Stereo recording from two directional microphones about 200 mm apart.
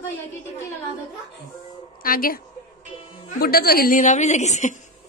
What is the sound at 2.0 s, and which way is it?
A woman's voice, 45° left (ahead or behind).